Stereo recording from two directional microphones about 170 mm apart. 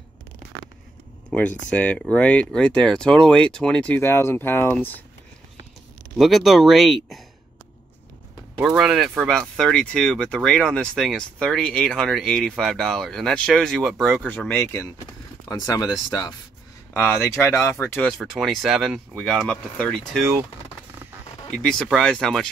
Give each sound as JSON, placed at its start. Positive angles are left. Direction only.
{"t": 1.3, "sound": "speech", "side_deg": 10}
{"t": 6.1, "sound": "speech", "side_deg": 0}
{"t": 8.5, "sound": "speech", "side_deg": -5}
{"t": 15.4, "sound": "speech", "side_deg": 20}
{"t": 18.2, "sound": "speech", "side_deg": 0}
{"t": 21.5, "sound": "speech", "side_deg": 0}